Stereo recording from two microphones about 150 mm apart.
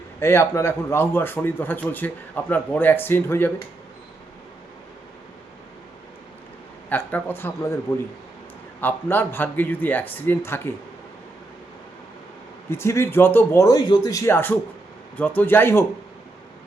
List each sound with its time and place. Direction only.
0.2 s a man's voice: 15° left (ahead or behind)
6.9 s a man's voice: 15° left (ahead or behind)
8.8 s a man's voice: 15° left (ahead or behind)
12.7 s a man's voice: 15° left (ahead or behind)